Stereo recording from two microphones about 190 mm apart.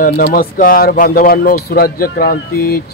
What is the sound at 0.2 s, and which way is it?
Speech, 50° left (ahead or behind).